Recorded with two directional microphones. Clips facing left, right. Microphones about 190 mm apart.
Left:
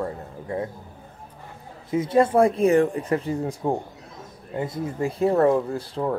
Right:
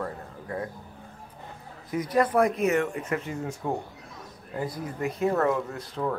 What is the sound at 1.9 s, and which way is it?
Speech, 25° left (ahead or behind).